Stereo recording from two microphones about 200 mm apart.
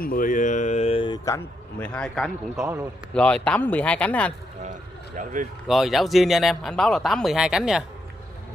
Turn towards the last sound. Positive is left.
turn(degrees=-5)  # may be behind; listen again after turning